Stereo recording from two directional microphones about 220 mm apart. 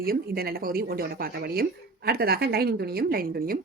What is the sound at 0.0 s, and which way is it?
A woman's voice, 45° right (ahead or behind).